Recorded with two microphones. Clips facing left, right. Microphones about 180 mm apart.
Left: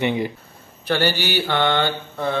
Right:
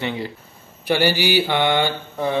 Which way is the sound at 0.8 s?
10° right (ahead or behind).